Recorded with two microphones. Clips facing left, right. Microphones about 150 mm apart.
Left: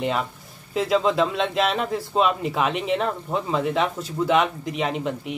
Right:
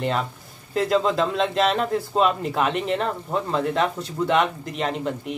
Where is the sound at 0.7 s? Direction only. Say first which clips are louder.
Even; centre (ahead or behind).